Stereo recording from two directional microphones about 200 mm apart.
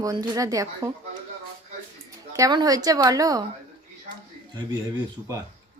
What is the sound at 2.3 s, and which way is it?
A woman's voice, 20° right (ahead or behind).